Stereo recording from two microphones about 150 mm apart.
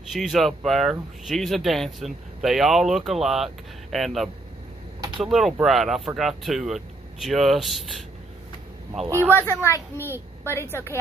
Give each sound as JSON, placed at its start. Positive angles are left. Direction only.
{"t": 0.1, "sound": "speech", "side_deg": 0}
{"t": 9.0, "sound": "speech", "side_deg": -20}
{"t": 9.3, "sound": "a woman's voice", "side_deg": 15}